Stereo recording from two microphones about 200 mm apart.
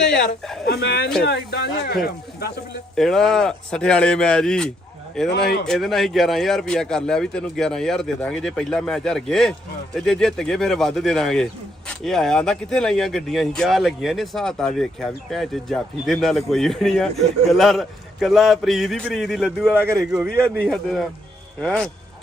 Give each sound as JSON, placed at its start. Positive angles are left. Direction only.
{"t": 0.7, "sound": "speech", "side_deg": 55}
{"t": 2.9, "sound": "speech", "side_deg": 0}